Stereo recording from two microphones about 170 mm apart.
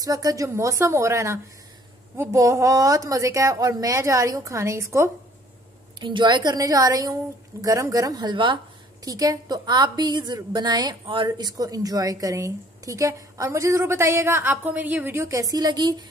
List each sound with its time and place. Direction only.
0.0 s a woman's voice: 20° right (ahead or behind)
5.9 s a woman's voice: 25° right (ahead or behind)